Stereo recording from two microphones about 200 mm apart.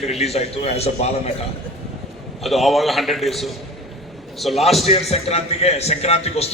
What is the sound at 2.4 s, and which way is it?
A man's voice, centre (ahead or behind).